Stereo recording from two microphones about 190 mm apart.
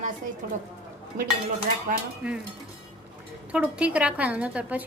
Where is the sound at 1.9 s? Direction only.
45° right (ahead or behind).